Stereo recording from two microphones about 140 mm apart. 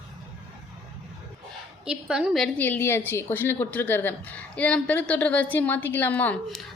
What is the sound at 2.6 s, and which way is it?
A woman's voice, 15° left (ahead or behind).